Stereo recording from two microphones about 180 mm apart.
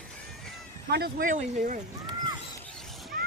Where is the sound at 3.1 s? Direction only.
50° right (ahead or behind).